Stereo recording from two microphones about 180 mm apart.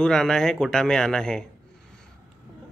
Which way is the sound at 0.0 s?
5° left (ahead or behind).